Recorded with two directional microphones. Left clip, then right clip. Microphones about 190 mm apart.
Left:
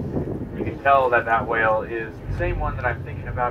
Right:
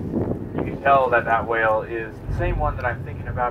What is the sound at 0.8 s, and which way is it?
Speech, 50° right (ahead or behind).